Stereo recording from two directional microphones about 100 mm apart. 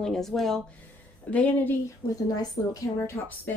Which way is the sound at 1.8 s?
40° left (ahead or behind).